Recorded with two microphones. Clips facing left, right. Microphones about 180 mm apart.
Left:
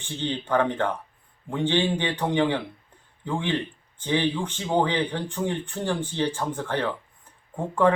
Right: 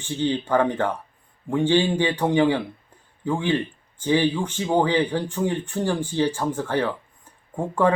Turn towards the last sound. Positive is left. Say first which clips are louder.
# right 1 dB
turn(degrees=-10)  # may be behind; listen again after turning